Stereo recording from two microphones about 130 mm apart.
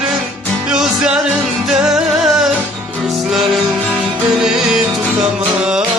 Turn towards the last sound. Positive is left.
turn(degrees=-5)  # may be behind; listen again after turning